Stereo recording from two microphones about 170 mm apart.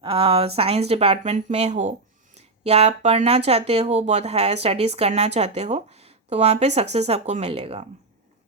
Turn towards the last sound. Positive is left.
turn(degrees=-35)  # may be behind; listen again after turning